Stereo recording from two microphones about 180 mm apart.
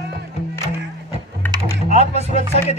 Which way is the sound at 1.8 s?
35° left (ahead or behind).